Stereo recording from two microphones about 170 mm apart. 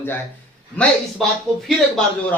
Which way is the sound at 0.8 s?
Centre (ahead or behind).